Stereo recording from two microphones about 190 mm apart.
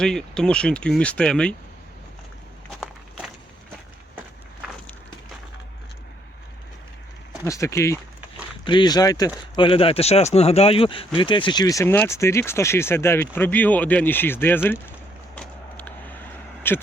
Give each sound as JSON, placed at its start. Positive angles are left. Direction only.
{"t": 0.0, "sound": "speech", "side_deg": 5}
{"t": 7.4, "sound": "speech", "side_deg": 15}
{"t": 15.4, "sound": "vehicle", "side_deg": 10}
{"t": 16.7, "sound": "speech", "side_deg": 10}